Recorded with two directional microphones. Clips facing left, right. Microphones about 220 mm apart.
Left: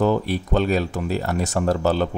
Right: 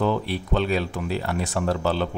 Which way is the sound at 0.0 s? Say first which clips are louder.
Left 4 dB; 45° left (ahead or behind).